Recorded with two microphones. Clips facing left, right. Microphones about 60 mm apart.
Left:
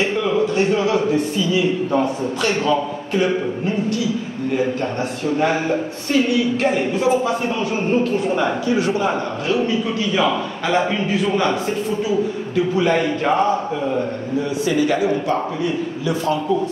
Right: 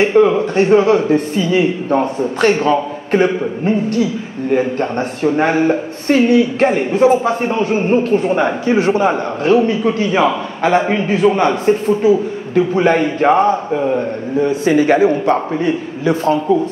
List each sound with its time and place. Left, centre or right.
0.0 s a man's voice: right